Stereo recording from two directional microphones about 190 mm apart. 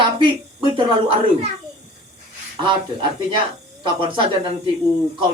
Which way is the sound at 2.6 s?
25° right (ahead or behind).